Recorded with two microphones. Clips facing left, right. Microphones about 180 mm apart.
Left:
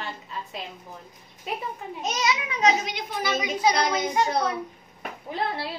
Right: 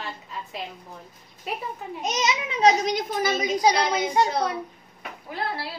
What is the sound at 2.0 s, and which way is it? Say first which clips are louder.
A child's voice: right 1 dB; 20° right (ahead or behind).